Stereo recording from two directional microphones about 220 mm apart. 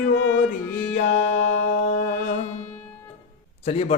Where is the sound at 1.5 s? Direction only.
35° left (ahead or behind).